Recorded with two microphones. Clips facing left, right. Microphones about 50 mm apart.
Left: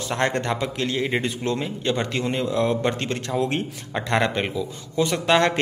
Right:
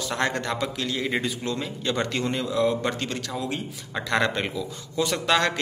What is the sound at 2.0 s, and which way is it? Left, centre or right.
A man's voice, left.